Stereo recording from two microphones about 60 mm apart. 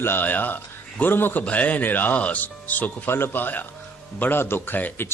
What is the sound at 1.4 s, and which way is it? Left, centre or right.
Speech, left.